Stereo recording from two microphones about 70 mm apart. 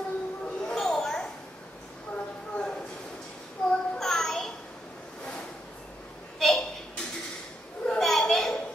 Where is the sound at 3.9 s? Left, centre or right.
Centre.